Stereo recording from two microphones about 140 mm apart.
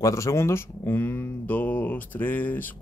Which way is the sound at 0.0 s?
20° left (ahead or behind).